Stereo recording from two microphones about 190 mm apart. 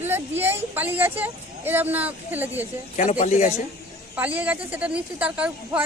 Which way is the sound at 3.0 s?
40° left (ahead or behind).